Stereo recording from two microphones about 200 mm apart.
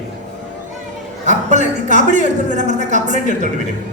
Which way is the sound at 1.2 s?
35° right (ahead or behind).